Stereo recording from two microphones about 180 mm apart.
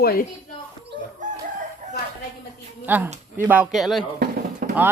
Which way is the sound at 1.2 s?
45° right (ahead or behind).